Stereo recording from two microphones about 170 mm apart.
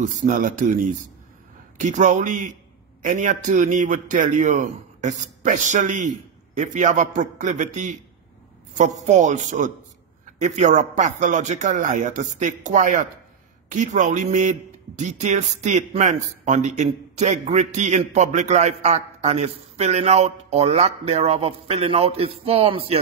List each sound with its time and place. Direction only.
0.0 s a man's voice: 45° right (ahead or behind)